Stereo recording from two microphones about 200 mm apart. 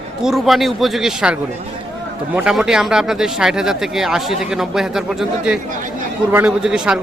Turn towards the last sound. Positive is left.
turn(degrees=-5)  # may be behind; listen again after turning